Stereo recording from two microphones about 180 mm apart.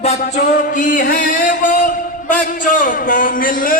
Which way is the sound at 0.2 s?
45° left (ahead or behind).